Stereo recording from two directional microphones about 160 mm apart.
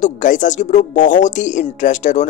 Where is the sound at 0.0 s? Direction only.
55° left (ahead or behind).